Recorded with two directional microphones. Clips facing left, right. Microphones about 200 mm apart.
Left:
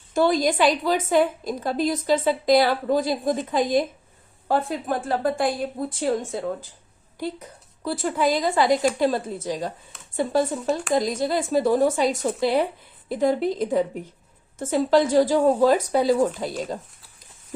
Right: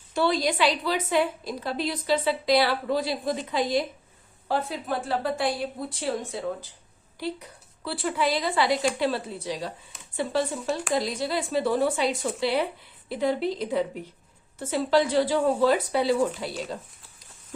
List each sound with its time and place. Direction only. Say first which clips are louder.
0.1 s a woman's voice: left 4 dB; 45° left (ahead or behind)